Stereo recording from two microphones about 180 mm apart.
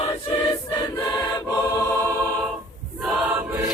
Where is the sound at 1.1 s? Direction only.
20° left (ahead or behind).